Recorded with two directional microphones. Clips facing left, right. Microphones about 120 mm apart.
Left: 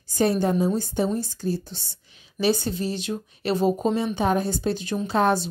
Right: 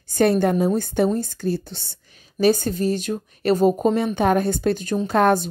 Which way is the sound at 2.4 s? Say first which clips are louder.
Right 5 dB; 45° right (ahead or behind).